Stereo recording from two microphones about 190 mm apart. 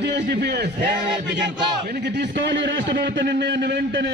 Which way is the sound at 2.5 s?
70° right (ahead or behind).